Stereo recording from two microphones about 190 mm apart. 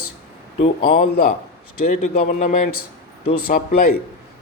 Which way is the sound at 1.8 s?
40° left (ahead or behind).